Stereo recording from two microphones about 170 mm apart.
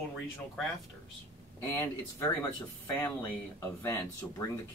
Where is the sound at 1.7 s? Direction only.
15° left (ahead or behind).